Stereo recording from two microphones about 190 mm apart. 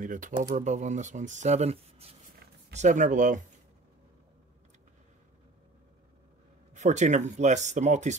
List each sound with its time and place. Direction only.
0.0 s speech: 45° right (ahead or behind)
6.7 s speech: 40° right (ahead or behind)